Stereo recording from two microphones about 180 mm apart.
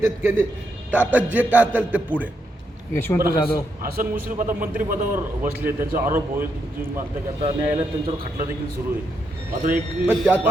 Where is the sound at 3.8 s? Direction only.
55° right (ahead or behind).